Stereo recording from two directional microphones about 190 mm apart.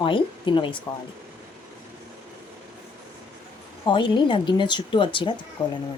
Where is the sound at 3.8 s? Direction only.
25° left (ahead or behind).